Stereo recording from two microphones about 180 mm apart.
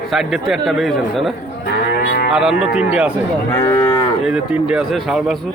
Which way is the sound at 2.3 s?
Centre (ahead or behind).